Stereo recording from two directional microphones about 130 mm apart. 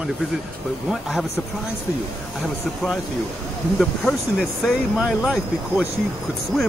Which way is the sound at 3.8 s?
Centre (ahead or behind).